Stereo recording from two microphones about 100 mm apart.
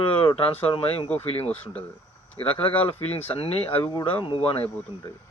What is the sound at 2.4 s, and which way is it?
Speech, 70° left (ahead or behind).